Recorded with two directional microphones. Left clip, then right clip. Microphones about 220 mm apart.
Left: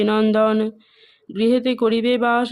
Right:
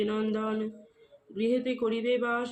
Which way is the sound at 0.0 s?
50° left (ahead or behind).